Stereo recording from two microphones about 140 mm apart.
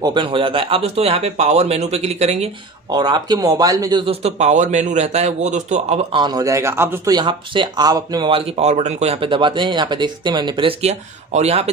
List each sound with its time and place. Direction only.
0.0 s speech: 35° right (ahead or behind)
2.9 s speech: 30° right (ahead or behind)
4.0 s speech: 45° right (ahead or behind)
6.1 s speech: 30° right (ahead or behind)
7.1 s speech: 35° right (ahead or behind); by 11.7 s 50° right (ahead or behind)